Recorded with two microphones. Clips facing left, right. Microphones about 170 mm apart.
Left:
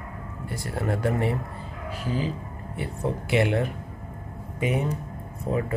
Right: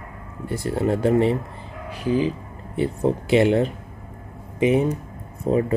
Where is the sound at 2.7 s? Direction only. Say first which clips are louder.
Right 8 dB; 30° right (ahead or behind).